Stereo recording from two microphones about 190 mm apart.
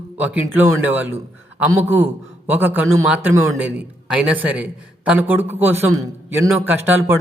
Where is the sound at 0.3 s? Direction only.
10° right (ahead or behind).